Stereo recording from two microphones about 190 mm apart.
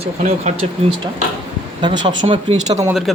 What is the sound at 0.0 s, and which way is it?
Speech, 35° right (ahead or behind).